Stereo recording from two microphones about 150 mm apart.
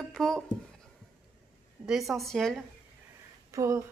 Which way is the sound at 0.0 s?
Centre (ahead or behind).